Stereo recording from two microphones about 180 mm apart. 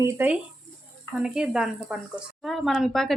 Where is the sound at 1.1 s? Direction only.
5° right (ahead or behind).